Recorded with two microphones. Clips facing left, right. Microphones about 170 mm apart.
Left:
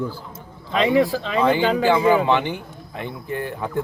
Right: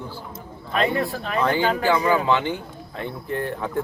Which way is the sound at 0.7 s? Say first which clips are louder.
Left 5 dB; 90° left.